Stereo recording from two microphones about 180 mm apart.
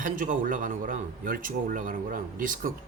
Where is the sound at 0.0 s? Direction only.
50° right (ahead or behind).